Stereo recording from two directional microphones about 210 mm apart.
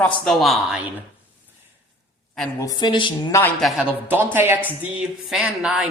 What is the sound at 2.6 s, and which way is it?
Speech, 20° left (ahead or behind).